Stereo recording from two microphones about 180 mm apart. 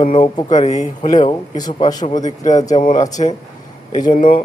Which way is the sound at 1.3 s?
25° left (ahead or behind).